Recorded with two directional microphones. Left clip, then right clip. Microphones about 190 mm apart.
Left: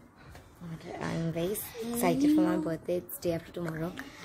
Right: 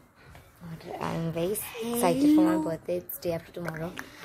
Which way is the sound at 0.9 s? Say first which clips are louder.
Right 3 dB; 10° right (ahead or behind).